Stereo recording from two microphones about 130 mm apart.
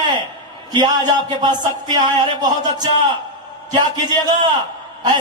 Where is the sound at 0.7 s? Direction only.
35° right (ahead or behind).